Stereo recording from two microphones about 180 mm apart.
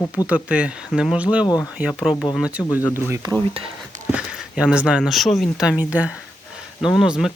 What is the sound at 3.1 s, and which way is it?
Speech, 20° right (ahead or behind).